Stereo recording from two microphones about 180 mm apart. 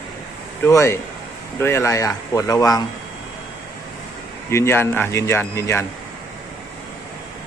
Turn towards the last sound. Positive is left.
turn(degrees=15)  # may be behind; listen again after turning